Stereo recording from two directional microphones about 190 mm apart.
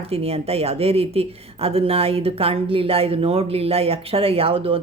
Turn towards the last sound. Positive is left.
turn(degrees=-30)  # may be behind; listen again after turning